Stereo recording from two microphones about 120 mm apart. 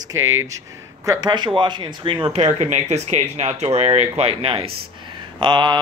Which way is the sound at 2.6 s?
70° right (ahead or behind).